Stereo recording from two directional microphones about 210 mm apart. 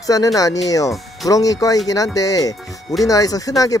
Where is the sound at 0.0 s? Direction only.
15° left (ahead or behind).